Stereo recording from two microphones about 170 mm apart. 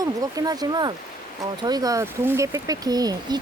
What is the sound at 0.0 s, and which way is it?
Speech, 20° right (ahead or behind).